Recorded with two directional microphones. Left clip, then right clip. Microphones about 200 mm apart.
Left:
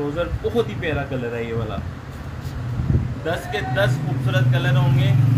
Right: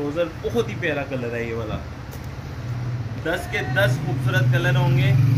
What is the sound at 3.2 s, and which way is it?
Speech, 15° left (ahead or behind).